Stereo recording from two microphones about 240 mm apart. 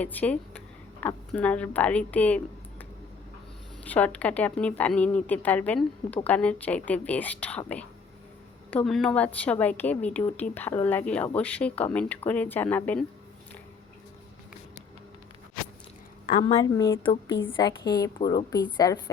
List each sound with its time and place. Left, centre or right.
0.0 s a woman's voice: centre
3.8 s a woman's voice: centre
8.7 s a woman's voice: centre
16.3 s a woman's voice: left